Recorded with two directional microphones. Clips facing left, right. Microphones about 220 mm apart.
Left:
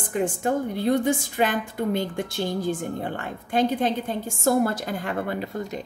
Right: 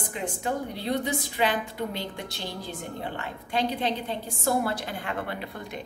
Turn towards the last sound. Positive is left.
turn(degrees=40)  # may be behind; listen again after turning